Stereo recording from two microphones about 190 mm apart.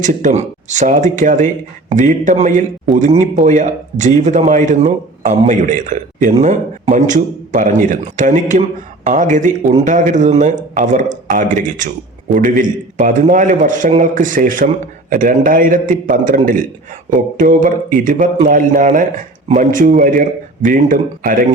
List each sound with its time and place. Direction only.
0.0 s a man's voice: 40° right (ahead or behind)